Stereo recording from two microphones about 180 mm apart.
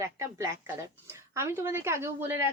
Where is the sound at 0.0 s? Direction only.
15° right (ahead or behind).